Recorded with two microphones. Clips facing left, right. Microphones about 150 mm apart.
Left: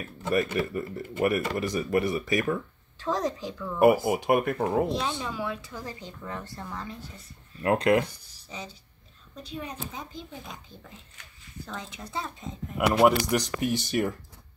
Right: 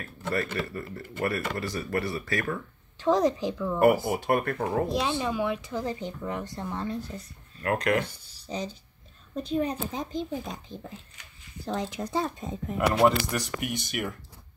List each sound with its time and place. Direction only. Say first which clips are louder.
0.0 s speech: left 4 dB; 15° left (ahead or behind)
3.0 s speech: right 6 dB; 15° right (ahead or behind)
3.8 s speech: left 2 dB; 15° left (ahead or behind)
4.9 s speech: right 4 dB; 15° right (ahead or behind)
7.6 s speech: left 4 dB; 25° left (ahead or behind)
8.0 s speech: even; 35° right (ahead or behind)
9.3 s a woman's voice: right 10 dB; 45° right (ahead or behind)
9.8 s a child's voice: right 7 dB; 25° right (ahead or behind)
11.6 s speech: right 8 dB; 35° right (ahead or behind)
13.3 s speech: left 5 dB; 25° left (ahead or behind)